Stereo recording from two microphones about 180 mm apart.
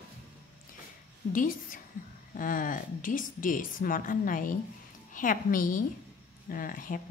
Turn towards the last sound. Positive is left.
turn(degrees=50)  # may be behind; listen again after turning